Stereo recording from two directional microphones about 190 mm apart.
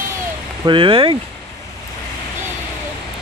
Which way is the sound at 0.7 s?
25° right (ahead or behind).